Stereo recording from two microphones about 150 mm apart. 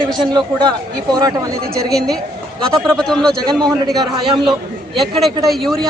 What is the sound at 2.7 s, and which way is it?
Speech, 5° left (ahead or behind).